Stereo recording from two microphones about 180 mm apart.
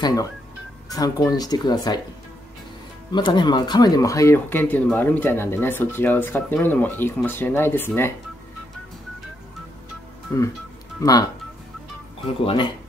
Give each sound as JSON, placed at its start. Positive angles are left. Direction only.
{"t": 0.0, "sound": "speech", "side_deg": 20}
{"t": 3.1, "sound": "speech", "side_deg": 25}
{"t": 10.3, "sound": "speech", "side_deg": 15}
{"t": 12.4, "sound": "speech", "side_deg": 30}